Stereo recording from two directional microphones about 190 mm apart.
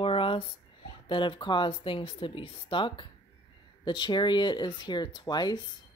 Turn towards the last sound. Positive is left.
turn(degrees=20)  # may be behind; listen again after turning